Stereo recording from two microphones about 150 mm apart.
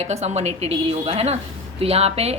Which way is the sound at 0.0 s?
45° right (ahead or behind).